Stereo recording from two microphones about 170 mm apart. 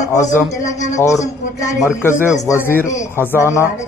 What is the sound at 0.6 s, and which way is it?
Speech, 45° left (ahead or behind).